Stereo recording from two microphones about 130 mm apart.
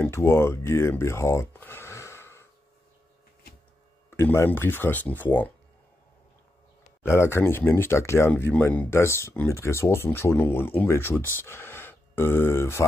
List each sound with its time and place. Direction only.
0.0 s speech: 20° left (ahead or behind)
4.1 s speech: 20° left (ahead or behind)
7.0 s speech: 20° left (ahead or behind)